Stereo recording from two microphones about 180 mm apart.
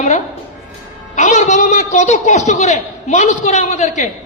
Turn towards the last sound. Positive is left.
turn(degrees=40)  # may be behind; listen again after turning